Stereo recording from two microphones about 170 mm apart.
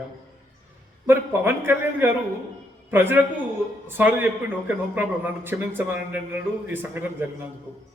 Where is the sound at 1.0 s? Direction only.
15° right (ahead or behind).